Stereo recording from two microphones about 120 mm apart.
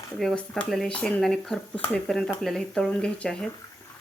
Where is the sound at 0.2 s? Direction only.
5° left (ahead or behind).